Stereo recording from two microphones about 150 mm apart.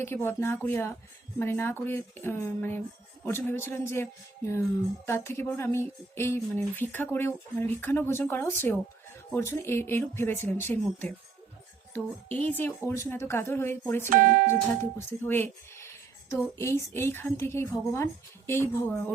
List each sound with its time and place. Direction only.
0.0 s a woman's voice: 15° left (ahead or behind)
11.9 s a woman's voice: 10° left (ahead or behind)
14.1 s speech: 65° right (ahead or behind)
14.7 s a woman's voice: 15° left (ahead or behind)